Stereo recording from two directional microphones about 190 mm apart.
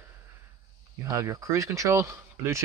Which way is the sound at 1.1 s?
15° right (ahead or behind).